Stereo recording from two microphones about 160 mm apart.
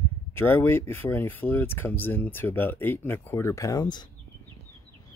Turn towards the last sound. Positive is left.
turn(degrees=25)  # may be behind; listen again after turning